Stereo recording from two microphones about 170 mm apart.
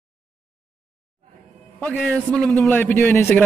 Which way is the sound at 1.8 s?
5° left (ahead or behind).